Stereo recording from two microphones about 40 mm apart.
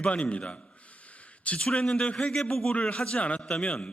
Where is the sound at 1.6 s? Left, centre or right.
Left.